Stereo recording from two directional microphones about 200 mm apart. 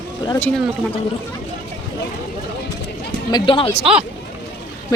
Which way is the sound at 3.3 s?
25° left (ahead or behind).